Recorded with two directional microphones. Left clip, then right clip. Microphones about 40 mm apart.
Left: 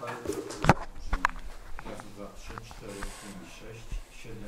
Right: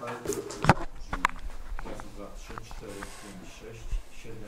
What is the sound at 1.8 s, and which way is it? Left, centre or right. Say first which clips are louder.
Speech: right 1 dB; centre.